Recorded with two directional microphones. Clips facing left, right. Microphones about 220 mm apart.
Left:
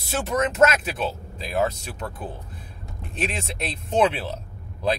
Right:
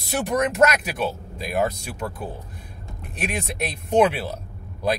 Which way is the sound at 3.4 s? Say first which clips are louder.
Right 3 dB; 10° right (ahead or behind).